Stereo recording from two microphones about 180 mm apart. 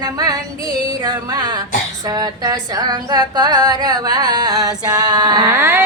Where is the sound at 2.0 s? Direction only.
20° right (ahead or behind).